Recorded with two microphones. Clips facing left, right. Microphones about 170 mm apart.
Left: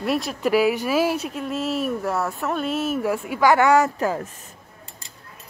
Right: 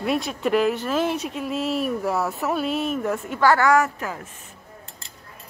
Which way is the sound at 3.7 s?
35° left (ahead or behind).